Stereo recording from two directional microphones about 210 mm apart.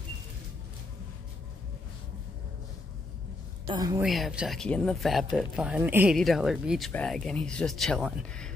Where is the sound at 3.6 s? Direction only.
20° right (ahead or behind).